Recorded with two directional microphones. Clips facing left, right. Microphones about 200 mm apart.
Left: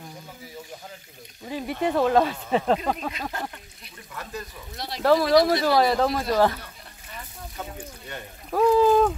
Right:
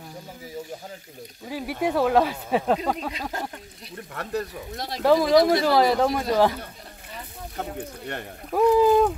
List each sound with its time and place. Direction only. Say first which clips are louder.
1.5 s speech: even; 10° right (ahead or behind)
3.1 s speech: right 1 dB; 35° right (ahead or behind)
3.9 s speech: right 7 dB; 60° right (ahead or behind)
5.0 s speech: right 1 dB; 15° right (ahead or behind)
7.5 s speech: right 5 dB; 60° right (ahead or behind)
8.5 s speech: right 1 dB; 15° right (ahead or behind)